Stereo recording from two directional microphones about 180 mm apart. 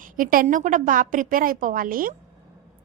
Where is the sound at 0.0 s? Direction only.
50° right (ahead or behind).